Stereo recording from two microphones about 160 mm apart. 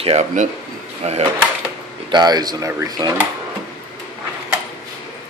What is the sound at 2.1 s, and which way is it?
Speech, 25° right (ahead or behind).